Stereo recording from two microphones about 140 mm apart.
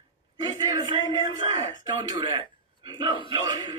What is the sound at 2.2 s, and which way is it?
A man's voice, 35° right (ahead or behind).